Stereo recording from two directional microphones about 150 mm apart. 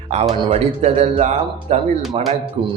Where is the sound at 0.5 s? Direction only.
45° right (ahead or behind).